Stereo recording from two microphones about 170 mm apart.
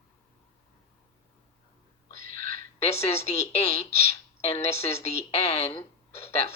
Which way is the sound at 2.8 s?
40° left (ahead or behind).